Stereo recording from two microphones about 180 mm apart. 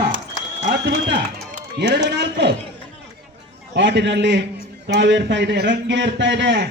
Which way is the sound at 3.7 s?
75° right (ahead or behind).